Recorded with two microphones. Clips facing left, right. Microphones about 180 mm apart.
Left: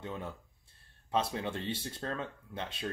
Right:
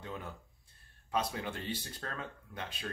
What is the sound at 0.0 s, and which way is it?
Speech, 25° left (ahead or behind).